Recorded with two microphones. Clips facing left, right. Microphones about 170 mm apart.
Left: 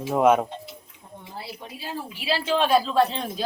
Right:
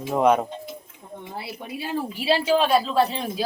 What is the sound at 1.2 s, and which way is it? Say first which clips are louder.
Speech: right 3 dB; 60° right (ahead or behind).